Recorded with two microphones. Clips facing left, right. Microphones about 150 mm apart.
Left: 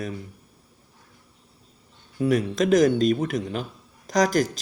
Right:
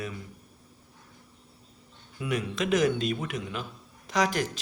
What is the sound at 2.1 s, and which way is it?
Speech, 40° left (ahead or behind).